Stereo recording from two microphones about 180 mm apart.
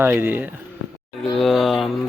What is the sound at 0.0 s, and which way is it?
Speech, 10° right (ahead or behind).